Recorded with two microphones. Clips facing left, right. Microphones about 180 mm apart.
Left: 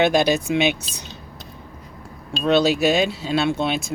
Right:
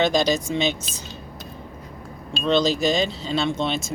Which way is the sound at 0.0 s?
60° left (ahead or behind).